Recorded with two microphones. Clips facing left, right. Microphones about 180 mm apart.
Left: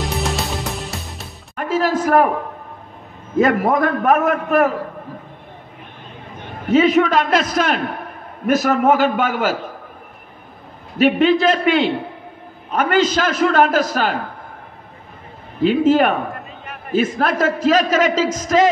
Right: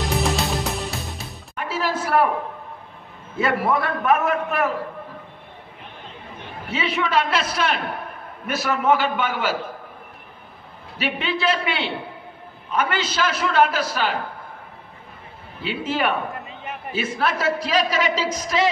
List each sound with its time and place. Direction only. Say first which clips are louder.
0.0 s music: even; centre (ahead or behind)
1.5 s music: left 7 dB; 45° left (ahead or behind)
3.3 s a man's voice: left 6 dB; 45° left (ahead or behind)
6.7 s a man's voice: left 9 dB; 45° left (ahead or behind)
11.0 s a man's voice: left 12 dB; 45° left (ahead or behind)
15.6 s a man's voice: left 10 dB; 45° left (ahead or behind)